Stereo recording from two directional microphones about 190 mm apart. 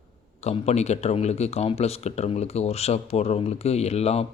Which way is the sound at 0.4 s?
35° left (ahead or behind).